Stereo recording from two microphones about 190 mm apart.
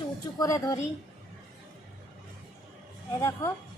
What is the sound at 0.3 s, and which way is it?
Speech, 20° left (ahead or behind).